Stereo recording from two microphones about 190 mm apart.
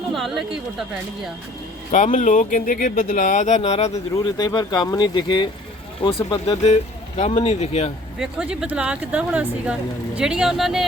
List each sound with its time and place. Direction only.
0.1 s a woman's voice: centre (ahead or behind)
1.9 s speech: 40° left (ahead or behind)
4.1 s speech: 20° left (ahead or behind)
8.2 s a woman's voice: 5° right (ahead or behind)